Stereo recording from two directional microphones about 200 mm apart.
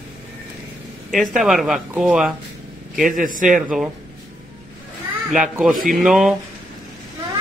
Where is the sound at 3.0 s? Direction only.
40° right (ahead or behind).